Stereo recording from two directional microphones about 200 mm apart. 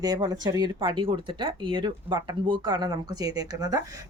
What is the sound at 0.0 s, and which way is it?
Speech, 20° right (ahead or behind).